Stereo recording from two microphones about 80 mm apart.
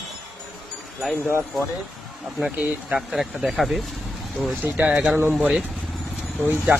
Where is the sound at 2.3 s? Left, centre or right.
Centre.